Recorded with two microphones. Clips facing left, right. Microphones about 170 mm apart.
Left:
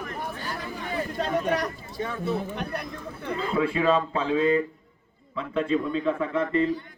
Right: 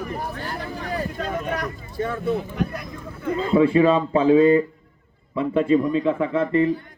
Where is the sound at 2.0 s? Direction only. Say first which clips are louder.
Right 5 dB; 50° right (ahead or behind).